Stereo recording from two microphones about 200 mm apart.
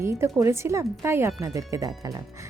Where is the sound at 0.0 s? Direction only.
15° right (ahead or behind).